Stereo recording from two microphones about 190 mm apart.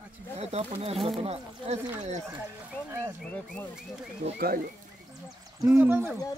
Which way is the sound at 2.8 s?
15° right (ahead or behind).